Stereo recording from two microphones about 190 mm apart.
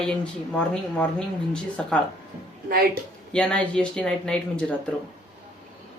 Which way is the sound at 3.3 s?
5° left (ahead or behind).